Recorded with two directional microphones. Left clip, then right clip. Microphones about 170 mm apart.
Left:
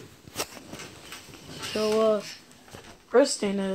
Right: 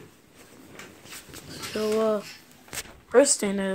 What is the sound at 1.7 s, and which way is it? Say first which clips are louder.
Speech: left 1 dB; 10° right (ahead or behind).